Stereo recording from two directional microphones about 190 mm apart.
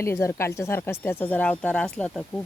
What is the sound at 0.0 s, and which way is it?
Speech, 15° left (ahead or behind).